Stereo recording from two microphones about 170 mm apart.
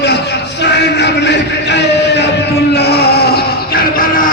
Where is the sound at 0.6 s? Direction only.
90° left.